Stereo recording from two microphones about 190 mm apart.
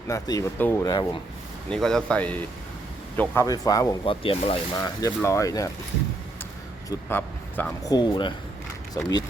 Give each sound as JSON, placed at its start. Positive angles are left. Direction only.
{"t": 0.1, "sound": "speech", "side_deg": 15}
{"t": 1.7, "sound": "speech", "side_deg": 5}
{"t": 4.8, "sound": "speech", "side_deg": 15}
{"t": 6.9, "sound": "speech", "side_deg": 10}
{"t": 7.9, "sound": "speech", "side_deg": 20}